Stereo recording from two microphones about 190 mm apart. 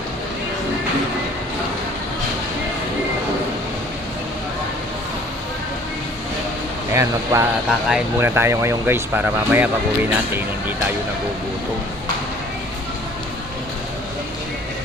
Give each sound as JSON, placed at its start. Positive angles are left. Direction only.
{"t": 6.9, "sound": "speech", "side_deg": -15}